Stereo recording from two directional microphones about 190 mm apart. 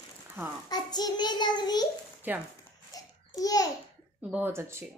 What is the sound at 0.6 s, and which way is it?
A child's voice, 20° left (ahead or behind).